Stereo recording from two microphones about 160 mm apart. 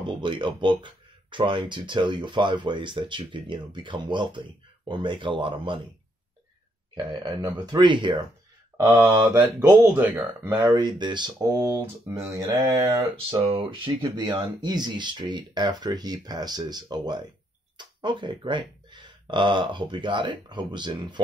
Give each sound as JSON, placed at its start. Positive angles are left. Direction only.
{"t": 0.0, "sound": "speech", "side_deg": -30}
{"t": 7.2, "sound": "speech", "side_deg": -25}
{"t": 8.7, "sound": "speech", "side_deg": -15}
{"t": 9.0, "sound": "speech", "side_deg": -25}
{"t": 9.3, "sound": "speech", "side_deg": -15}
{"t": 10.5, "sound": "speech", "side_deg": -25}